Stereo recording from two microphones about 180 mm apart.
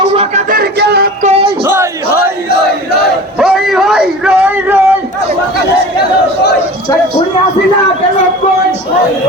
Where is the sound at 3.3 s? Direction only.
Centre (ahead or behind).